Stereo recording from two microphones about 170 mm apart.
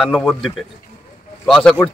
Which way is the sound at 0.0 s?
Centre (ahead or behind).